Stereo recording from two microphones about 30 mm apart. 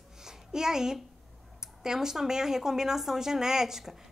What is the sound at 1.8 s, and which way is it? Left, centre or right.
A woman's voice, centre.